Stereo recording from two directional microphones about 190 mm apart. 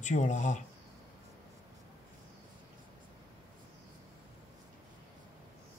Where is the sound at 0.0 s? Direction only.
40° left (ahead or behind).